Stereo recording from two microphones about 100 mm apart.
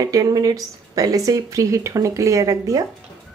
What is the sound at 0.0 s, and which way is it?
Speech, 35° right (ahead or behind).